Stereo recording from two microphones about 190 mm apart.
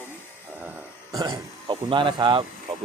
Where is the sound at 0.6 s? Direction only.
10° right (ahead or behind).